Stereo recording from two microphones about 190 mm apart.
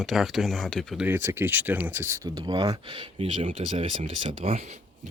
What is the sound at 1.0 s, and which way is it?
Speech, 10° right (ahead or behind).